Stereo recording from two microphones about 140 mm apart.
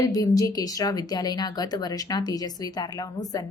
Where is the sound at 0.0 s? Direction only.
25° left (ahead or behind).